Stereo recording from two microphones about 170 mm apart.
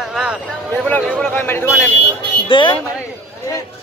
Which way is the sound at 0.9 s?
10° left (ahead or behind).